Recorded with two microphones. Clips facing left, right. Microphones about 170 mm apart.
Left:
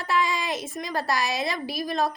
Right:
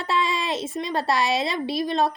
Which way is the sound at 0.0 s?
30° right (ahead or behind).